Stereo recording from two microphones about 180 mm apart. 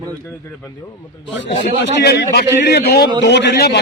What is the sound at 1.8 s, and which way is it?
A man's voice, 75° left (ahead or behind).